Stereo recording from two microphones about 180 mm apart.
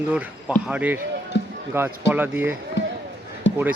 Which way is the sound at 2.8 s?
80° left.